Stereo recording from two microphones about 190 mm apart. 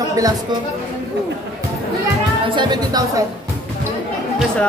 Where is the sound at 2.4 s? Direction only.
25° right (ahead or behind).